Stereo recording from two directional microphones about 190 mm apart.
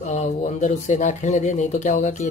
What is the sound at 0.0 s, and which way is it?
Speech, 40° left (ahead or behind).